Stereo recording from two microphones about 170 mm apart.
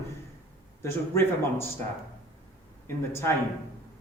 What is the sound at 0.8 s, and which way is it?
Speech, 15° left (ahead or behind).